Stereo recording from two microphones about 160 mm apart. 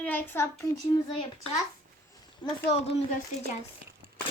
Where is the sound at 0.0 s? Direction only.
10° left (ahead or behind).